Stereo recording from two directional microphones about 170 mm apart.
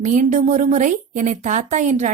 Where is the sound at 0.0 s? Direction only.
45° right (ahead or behind).